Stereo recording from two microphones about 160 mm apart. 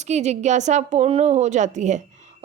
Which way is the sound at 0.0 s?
45° right (ahead or behind).